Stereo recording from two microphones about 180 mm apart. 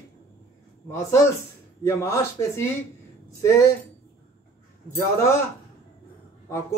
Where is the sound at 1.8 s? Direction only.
15° left (ahead or behind).